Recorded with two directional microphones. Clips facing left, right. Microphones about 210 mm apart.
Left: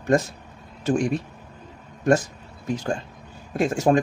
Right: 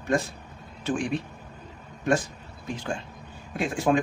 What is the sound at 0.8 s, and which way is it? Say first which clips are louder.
Speech: left 5 dB; 45° left (ahead or behind).